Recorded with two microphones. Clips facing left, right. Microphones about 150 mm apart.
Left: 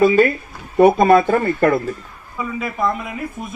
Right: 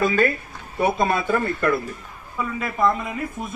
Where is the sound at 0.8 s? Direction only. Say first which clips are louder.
Left 10 dB; 55° left (ahead or behind).